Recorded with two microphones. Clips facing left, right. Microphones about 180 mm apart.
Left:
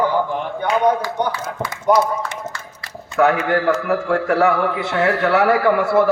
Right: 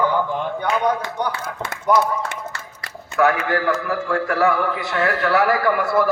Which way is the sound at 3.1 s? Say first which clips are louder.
Left 2 dB; 25° left (ahead or behind).